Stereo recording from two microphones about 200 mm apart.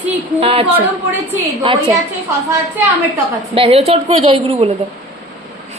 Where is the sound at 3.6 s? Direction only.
30° right (ahead or behind).